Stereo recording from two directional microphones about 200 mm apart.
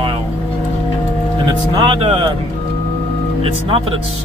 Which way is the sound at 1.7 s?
25° right (ahead or behind).